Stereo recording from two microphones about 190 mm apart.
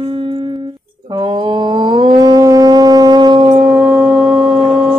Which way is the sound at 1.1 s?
25° right (ahead or behind).